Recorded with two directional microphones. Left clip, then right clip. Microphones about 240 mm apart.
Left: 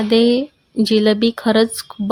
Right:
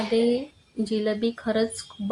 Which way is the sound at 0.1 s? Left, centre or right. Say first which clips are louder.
Left 9 dB; left.